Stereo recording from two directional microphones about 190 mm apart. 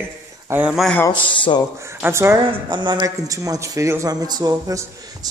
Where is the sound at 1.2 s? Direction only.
25° left (ahead or behind).